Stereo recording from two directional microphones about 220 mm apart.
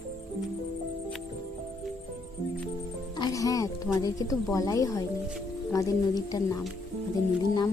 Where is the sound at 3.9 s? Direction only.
15° left (ahead or behind).